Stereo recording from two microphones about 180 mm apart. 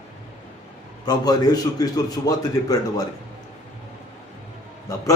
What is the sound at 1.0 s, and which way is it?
A man's voice, 20° left (ahead or behind).